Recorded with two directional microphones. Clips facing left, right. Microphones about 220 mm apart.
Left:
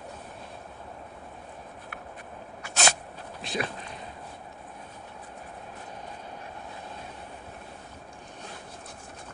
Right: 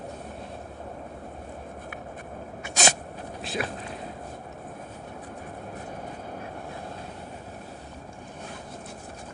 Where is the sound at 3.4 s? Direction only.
Centre (ahead or behind).